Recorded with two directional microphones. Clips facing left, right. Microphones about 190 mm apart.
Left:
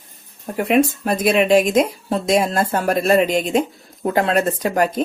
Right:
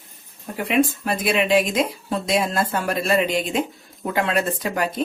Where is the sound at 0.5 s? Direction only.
45° left (ahead or behind).